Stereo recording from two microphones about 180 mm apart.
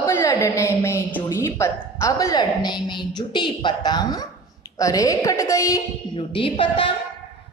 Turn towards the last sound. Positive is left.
turn(degrees=30)  # may be behind; listen again after turning